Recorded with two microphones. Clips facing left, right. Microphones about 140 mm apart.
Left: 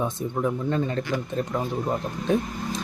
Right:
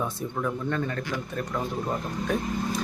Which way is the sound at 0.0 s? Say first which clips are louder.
Left 4 dB; 20° left (ahead or behind).